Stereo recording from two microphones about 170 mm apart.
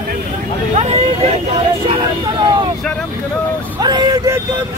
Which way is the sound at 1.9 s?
25° right (ahead or behind).